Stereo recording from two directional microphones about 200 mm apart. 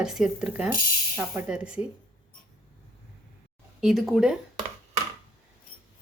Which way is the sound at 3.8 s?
Centre (ahead or behind).